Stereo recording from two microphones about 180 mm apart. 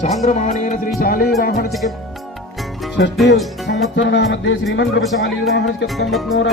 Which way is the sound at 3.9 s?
90° left.